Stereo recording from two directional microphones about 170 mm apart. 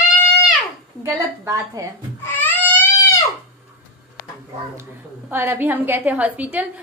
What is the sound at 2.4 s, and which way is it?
Crying, 10° left (ahead or behind).